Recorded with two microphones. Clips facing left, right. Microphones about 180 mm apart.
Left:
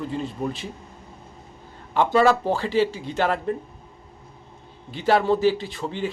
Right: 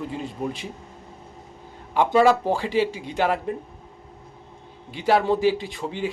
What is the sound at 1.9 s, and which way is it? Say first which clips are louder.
Speech: right 1 dB; 10° right (ahead or behind).